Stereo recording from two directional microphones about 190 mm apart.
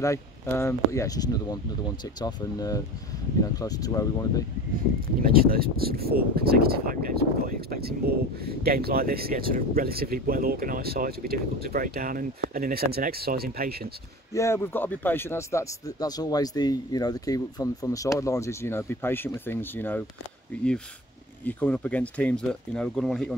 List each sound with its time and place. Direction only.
0.0 s speech: 15° left (ahead or behind)
5.2 s speech: 50° right (ahead or behind)
14.3 s speech: 15° left (ahead or behind)
21.5 s speech: 10° left (ahead or behind)